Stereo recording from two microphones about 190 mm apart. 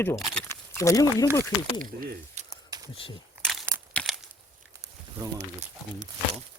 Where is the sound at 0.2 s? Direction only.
Centre (ahead or behind).